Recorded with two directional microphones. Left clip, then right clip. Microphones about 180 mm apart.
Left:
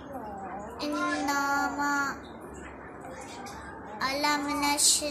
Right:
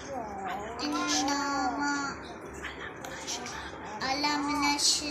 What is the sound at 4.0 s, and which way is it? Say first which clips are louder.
Child singing: left 2 dB; 20° left (ahead or behind).